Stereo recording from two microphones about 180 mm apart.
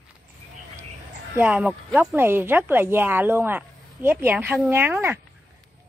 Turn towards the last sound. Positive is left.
turn(degrees=-10)  # may be behind; listen again after turning